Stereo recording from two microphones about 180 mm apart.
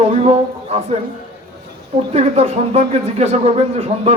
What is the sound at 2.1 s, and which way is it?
A man's voice, 35° right (ahead or behind).